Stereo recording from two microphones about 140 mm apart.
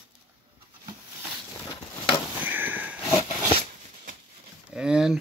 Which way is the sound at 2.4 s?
15° right (ahead or behind).